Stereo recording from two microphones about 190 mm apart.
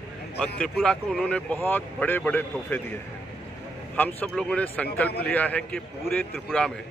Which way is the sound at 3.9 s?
10° left (ahead or behind).